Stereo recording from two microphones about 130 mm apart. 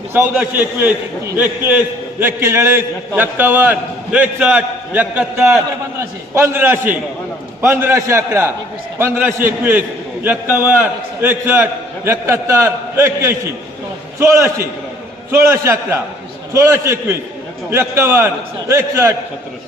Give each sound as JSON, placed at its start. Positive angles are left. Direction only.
{"t": 0.1, "sound": "a man's voice", "side_deg": -15}
{"t": 14.2, "sound": "a man's voice", "side_deg": -20}